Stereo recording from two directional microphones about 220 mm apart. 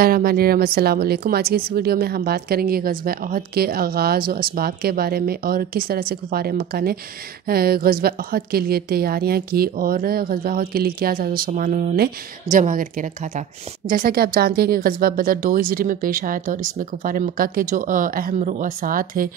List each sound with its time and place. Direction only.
0.0 s a woman's voice: 45° right (ahead or behind)
13.8 s speech: 40° right (ahead or behind)